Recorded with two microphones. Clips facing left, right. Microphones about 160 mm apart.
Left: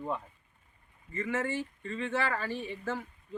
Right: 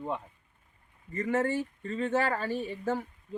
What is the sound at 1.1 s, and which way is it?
Speech, 40° right (ahead or behind).